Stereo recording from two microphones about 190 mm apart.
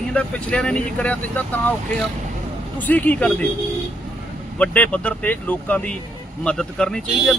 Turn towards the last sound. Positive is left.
turn(degrees=5)  # may be behind; listen again after turning